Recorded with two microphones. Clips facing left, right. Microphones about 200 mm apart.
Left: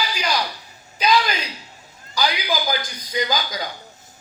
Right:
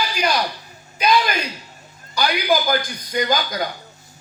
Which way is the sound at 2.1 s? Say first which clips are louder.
Right 4 dB; 55° right (ahead or behind).